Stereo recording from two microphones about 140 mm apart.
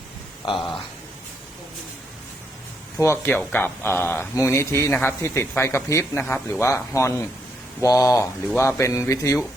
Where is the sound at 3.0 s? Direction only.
15° left (ahead or behind).